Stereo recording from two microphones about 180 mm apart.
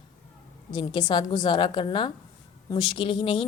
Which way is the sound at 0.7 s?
25° left (ahead or behind).